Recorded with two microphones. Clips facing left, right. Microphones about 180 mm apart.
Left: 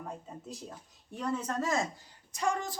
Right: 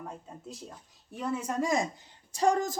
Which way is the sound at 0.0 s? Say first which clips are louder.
Even; centre (ahead or behind).